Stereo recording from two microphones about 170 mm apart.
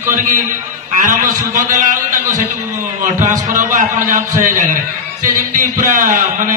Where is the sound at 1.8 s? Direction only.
50° right (ahead or behind).